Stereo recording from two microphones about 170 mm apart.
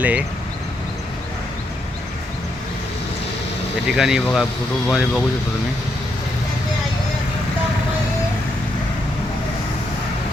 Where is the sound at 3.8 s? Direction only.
5° right (ahead or behind).